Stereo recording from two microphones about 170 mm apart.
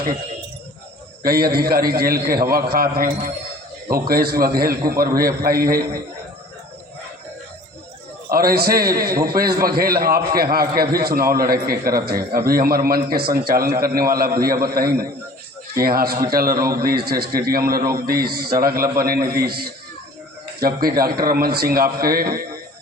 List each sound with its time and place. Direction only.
1.2 s a man's voice: 60° right (ahead or behind)
8.3 s a man's voice: 60° right (ahead or behind)